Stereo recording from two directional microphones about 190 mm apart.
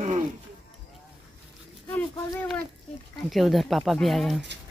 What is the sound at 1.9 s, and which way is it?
Speech, 10° left (ahead or behind).